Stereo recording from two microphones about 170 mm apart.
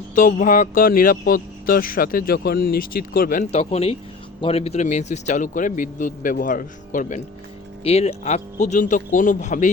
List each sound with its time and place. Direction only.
0.1 s speech: 50° left (ahead or behind)
3.5 s speech: 40° left (ahead or behind)